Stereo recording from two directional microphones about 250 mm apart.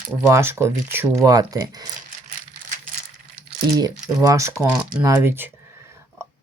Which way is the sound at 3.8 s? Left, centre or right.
Centre.